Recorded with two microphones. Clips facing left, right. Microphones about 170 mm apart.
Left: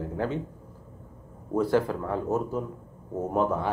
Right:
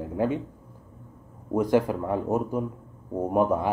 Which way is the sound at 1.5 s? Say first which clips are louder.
Right 2 dB; 15° right (ahead or behind).